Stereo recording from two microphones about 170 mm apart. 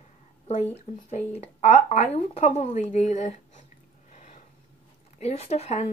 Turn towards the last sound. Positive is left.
turn(degrees=40)  # may be behind; listen again after turning